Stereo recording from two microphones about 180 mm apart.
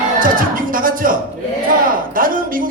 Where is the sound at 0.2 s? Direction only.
50° right (ahead or behind).